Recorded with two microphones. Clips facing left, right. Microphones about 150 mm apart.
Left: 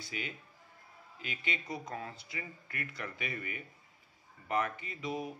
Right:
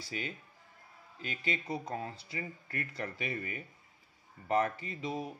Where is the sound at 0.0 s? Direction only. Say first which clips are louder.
Right 2 dB; 35° right (ahead or behind).